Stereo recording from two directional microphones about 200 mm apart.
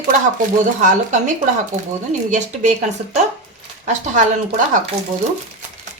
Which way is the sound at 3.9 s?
35° right (ahead or behind).